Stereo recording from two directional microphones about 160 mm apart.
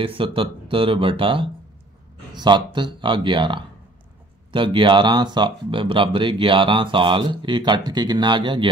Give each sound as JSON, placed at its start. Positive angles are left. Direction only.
{"t": 0.0, "sound": "speech", "side_deg": -35}